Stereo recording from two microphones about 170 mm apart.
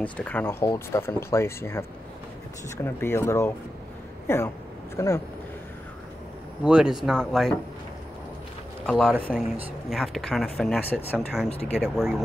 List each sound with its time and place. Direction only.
0.0 s speech: 10° left (ahead or behind)
4.9 s speech: 15° left (ahead or behind)
6.6 s speech: 5° right (ahead or behind)
8.8 s a man's voice: centre (ahead or behind)